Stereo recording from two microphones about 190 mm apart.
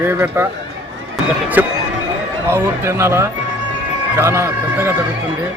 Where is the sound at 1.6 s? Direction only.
10° right (ahead or behind).